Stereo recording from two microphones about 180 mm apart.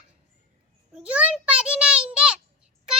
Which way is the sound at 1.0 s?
5° right (ahead or behind).